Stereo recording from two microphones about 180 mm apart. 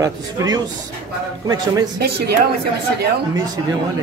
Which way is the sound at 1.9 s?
60° right (ahead or behind).